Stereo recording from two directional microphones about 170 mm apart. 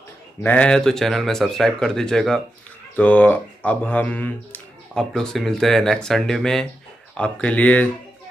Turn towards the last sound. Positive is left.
turn(degrees=10)  # may be behind; listen again after turning